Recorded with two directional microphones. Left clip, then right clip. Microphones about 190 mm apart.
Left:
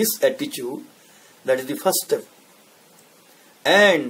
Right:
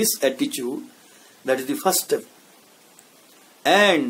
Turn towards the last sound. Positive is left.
turn(degrees=-15)  # may be behind; listen again after turning